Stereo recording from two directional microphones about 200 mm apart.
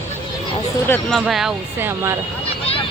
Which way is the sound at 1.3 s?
Centre (ahead or behind).